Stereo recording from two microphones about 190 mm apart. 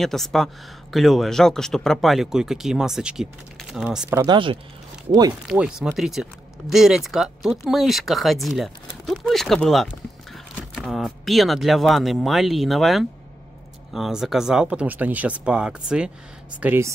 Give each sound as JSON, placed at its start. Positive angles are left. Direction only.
{"t": 0.0, "sound": "speech", "side_deg": 0}
{"t": 4.2, "sound": "speech", "side_deg": -25}
{"t": 5.5, "sound": "speech", "side_deg": -5}